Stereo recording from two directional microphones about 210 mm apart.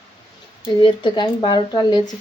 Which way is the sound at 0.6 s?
20° left (ahead or behind).